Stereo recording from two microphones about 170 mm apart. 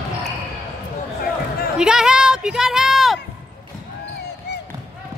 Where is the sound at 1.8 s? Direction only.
5° right (ahead or behind).